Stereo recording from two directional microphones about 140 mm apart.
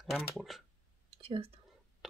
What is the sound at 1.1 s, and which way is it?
Whispering, 45° right (ahead or behind).